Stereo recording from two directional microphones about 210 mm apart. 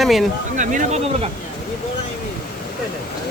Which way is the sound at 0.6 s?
35° right (ahead or behind).